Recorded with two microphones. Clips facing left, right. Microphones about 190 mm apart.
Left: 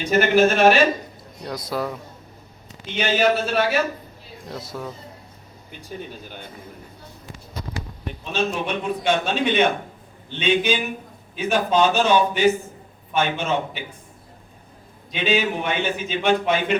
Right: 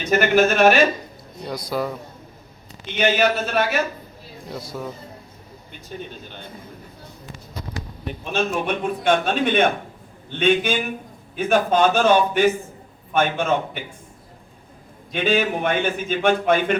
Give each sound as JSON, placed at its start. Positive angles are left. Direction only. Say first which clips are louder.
{"t": 0.1, "sound": "a man's voice", "louder": "even", "side_deg": -50}
{"t": 1.5, "sound": "a man's voice", "louder": "right 1 dB", "side_deg": 0}
{"t": 3.0, "sound": "a man's voice", "louder": "right 1 dB", "side_deg": -50}
{"t": 4.4, "sound": "a man's voice", "louder": "right 1 dB", "side_deg": 0}
{"t": 8.2, "sound": "a man's voice", "louder": "right 1 dB", "side_deg": -50}
{"t": 15.1, "sound": "a man's voice", "louder": "right 1 dB", "side_deg": -50}